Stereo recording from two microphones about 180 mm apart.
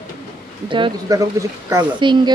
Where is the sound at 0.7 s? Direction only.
25° right (ahead or behind).